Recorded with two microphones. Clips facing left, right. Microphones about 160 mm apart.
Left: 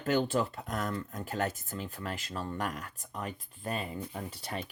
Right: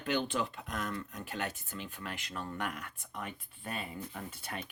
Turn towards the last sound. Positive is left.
turn(degrees=35)  # may be behind; listen again after turning